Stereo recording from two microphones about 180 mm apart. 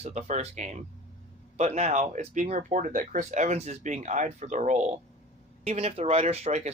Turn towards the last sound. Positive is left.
turn(degrees=-40)  # may be behind; listen again after turning